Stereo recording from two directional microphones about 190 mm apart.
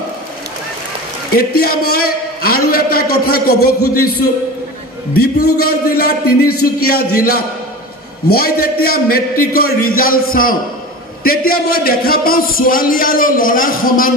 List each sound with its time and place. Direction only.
1.3 s speech: 55° left (ahead or behind)
5.1 s speech: 55° left (ahead or behind)